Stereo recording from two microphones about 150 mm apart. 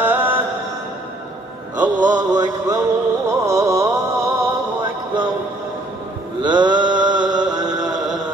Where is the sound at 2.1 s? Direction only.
25° right (ahead or behind).